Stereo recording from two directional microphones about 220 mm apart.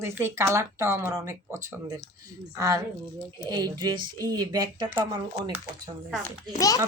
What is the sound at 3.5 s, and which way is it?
Speech, 20° right (ahead or behind).